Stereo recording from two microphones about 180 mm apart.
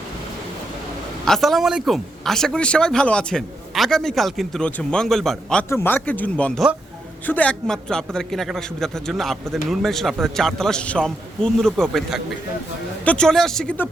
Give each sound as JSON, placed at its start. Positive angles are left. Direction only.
{"t": 1.2, "sound": "speech", "side_deg": 0}
{"t": 5.6, "sound": "a man's voice", "side_deg": 15}